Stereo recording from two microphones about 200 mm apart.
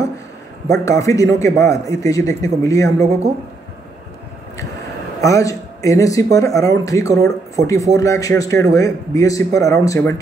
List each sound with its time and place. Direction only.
0.7 s a man's voice: 15° left (ahead or behind)
3.0 s a woman's voice: 30° right (ahead or behind)
5.2 s a man's voice: 15° left (ahead or behind)